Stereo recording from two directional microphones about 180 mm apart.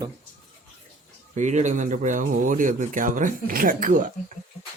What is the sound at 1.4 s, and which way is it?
Speech, 40° right (ahead or behind).